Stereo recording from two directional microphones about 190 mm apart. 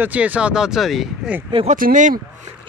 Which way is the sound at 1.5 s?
45° right (ahead or behind).